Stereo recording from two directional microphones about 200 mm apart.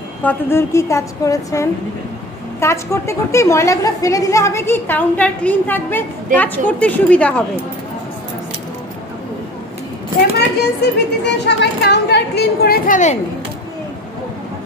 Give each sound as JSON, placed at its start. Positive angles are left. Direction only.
{"t": 0.2, "sound": "a woman's voice", "side_deg": 10}
{"t": 10.3, "sound": "speech", "side_deg": 60}